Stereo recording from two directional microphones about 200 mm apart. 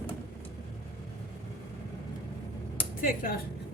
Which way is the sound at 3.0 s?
45° left (ahead or behind).